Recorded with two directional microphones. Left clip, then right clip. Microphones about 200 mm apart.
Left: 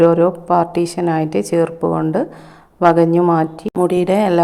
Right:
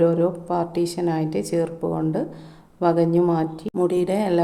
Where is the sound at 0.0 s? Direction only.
20° left (ahead or behind).